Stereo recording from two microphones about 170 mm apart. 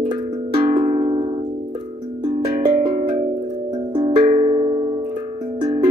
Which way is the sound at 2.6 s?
40° right (ahead or behind).